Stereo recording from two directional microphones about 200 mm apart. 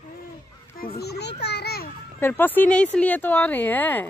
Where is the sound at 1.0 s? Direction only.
55° left (ahead or behind).